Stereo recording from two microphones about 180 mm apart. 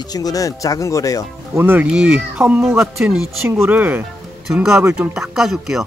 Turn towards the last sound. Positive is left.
turn(degrees=0)  # may be behind; listen again after turning